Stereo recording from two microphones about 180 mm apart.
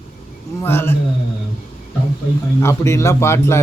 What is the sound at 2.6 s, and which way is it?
Speech, 15° left (ahead or behind).